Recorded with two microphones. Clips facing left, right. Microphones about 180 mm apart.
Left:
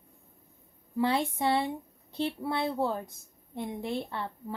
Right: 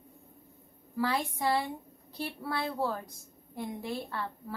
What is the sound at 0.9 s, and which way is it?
A woman's voice, 25° left (ahead or behind).